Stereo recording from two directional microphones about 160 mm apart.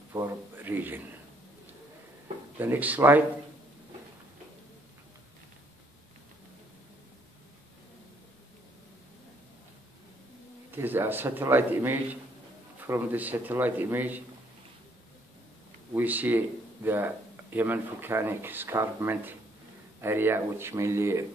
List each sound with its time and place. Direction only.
0.1 s a man's voice: 15° right (ahead or behind)
2.6 s speech: 10° right (ahead or behind)
10.7 s speech: 15° right (ahead or behind)
15.9 s speech: 10° right (ahead or behind)